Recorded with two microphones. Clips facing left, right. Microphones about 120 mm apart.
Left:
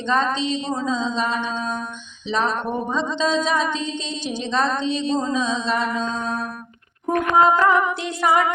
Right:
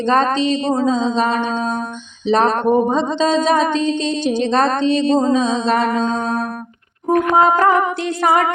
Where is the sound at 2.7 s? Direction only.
45° right (ahead or behind).